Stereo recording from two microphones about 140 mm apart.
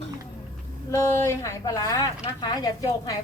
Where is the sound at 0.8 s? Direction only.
20° left (ahead or behind).